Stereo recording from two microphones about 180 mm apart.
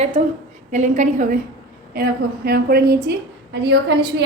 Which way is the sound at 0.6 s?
45° right (ahead or behind).